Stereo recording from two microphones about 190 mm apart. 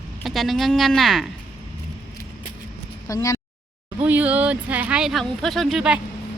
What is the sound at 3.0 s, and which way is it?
Speech, 15° left (ahead or behind).